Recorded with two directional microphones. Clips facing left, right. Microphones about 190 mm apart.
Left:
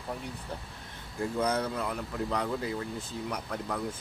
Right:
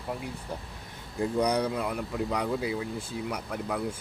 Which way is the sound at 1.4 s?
15° right (ahead or behind).